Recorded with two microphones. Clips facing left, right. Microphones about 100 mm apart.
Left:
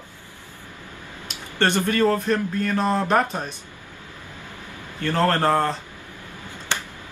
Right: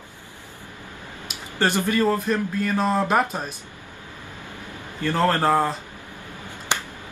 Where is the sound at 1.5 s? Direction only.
5° right (ahead or behind).